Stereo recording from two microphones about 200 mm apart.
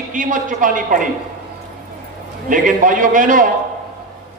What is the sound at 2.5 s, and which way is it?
Speech, 40° right (ahead or behind).